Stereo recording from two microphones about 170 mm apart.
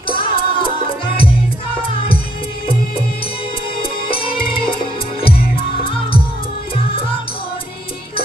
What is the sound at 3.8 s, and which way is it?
Music, 30° left (ahead or behind).